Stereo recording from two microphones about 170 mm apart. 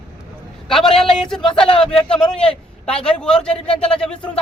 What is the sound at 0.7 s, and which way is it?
A man's voice, centre (ahead or behind).